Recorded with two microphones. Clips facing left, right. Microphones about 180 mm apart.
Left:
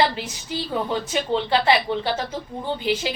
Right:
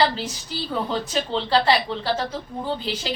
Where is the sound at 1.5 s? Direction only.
15° left (ahead or behind).